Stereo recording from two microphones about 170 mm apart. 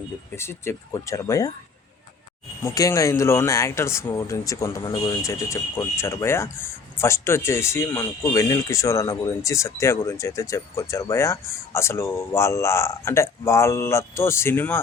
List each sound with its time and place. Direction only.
0.3 s speech: 15° left (ahead or behind)
2.6 s speech: 20° left (ahead or behind)